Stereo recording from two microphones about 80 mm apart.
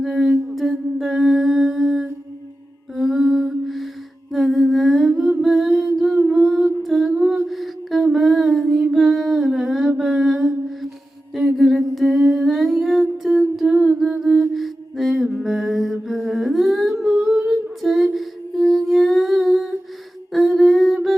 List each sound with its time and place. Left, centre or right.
0.0 s humming: centre
5.4 s music: centre
6.8 s humming: centre
7.4 s music: centre
8.1 s a sound: centre
8.6 s a sound: centre
8.9 s music: centre
9.5 s mantra: centre
11.3 s humming: centre
14.0 s mantra: centre
14.5 s music: centre
20.3 s humming: centre